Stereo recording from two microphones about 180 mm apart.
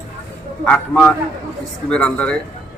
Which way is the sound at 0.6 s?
5° left (ahead or behind).